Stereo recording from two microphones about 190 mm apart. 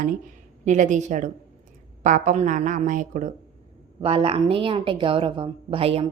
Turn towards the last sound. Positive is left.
turn(degrees=-30)  # may be behind; listen again after turning